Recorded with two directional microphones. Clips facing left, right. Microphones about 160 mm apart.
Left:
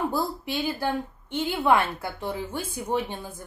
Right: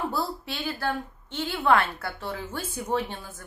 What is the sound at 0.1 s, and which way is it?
A woman's voice, 15° left (ahead or behind).